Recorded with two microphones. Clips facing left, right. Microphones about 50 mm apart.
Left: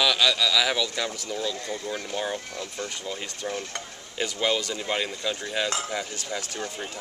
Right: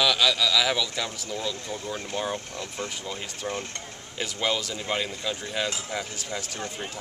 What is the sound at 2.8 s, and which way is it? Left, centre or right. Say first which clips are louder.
Cutlery: left 1 dB; centre.